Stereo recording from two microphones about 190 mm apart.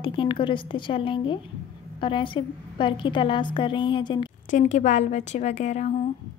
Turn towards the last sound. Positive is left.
turn(degrees=40)  # may be behind; listen again after turning